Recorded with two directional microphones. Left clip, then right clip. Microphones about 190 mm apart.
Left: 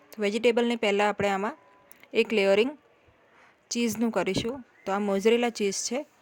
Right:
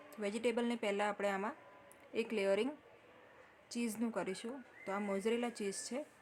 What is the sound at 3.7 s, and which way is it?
Speech, 50° left (ahead or behind).